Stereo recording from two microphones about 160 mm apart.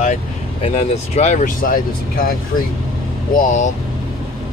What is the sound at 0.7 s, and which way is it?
Speech, 45° left (ahead or behind).